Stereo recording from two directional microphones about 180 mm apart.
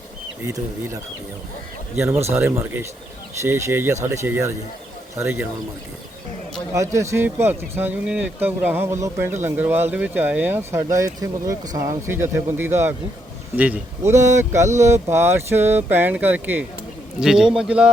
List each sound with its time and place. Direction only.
0.4 s speech: 15° right (ahead or behind)
2.0 s speech: 15° right (ahead or behind)
6.7 s speech: 15° right (ahead or behind)